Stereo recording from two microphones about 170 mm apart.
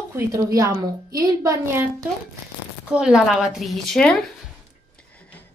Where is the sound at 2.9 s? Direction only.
5° right (ahead or behind).